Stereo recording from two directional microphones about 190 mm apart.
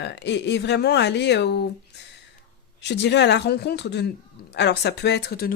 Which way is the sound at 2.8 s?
65° left (ahead or behind).